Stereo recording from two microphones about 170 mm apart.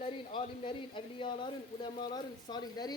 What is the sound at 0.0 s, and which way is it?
Speech, 30° left (ahead or behind).